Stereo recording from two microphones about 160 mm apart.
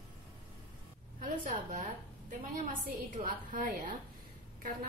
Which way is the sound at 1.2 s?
50° right (ahead or behind).